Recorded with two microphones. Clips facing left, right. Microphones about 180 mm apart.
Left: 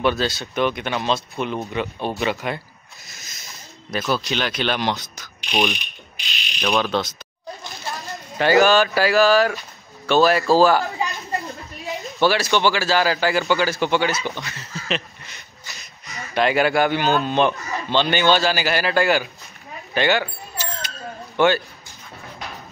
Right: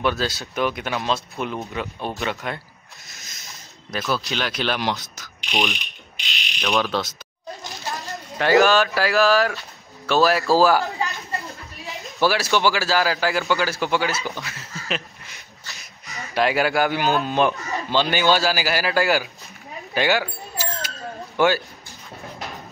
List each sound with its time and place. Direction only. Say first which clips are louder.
0.0 s speech: left 2 dB; 5° right (ahead or behind)
3.9 s speech: left 2 dB; centre (ahead or behind)
8.4 s speech: left 1 dB; centre (ahead or behind)
11.0 s a sound: left 2 dB; 15° left (ahead or behind)
11.9 s speech: left 2 dB; centre (ahead or behind)
19.9 s a sound: left 1 dB; 5° right (ahead or behind)
21.4 s speech: left 1 dB; 5° right (ahead or behind)